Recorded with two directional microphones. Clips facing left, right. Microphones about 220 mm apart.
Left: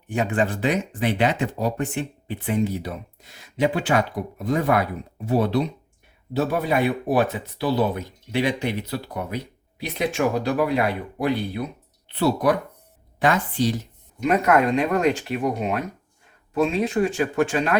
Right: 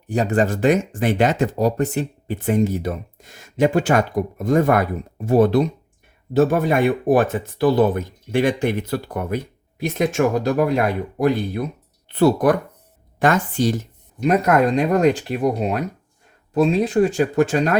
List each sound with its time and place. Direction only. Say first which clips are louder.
0.1 s speech: right 4 dB; 40° right (ahead or behind)